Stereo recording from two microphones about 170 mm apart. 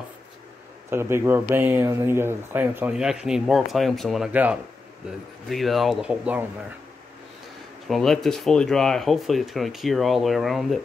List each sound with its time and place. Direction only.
0.8 s speech: 15° right (ahead or behind)
7.9 s speech: centre (ahead or behind)